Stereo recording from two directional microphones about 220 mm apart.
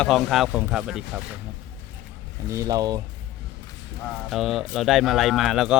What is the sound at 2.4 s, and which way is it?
Speech, 15° right (ahead or behind).